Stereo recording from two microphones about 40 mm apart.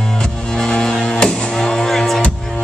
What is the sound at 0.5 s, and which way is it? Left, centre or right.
Music, centre.